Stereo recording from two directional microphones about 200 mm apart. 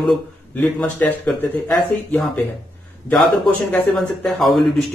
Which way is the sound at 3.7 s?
5° left (ahead or behind).